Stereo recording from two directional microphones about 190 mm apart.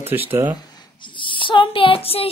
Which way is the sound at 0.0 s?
10° right (ahead or behind).